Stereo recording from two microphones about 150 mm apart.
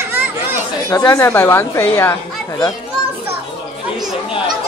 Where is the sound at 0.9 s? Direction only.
20° left (ahead or behind).